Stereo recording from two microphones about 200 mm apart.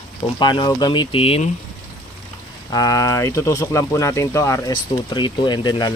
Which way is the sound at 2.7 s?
15° left (ahead or behind).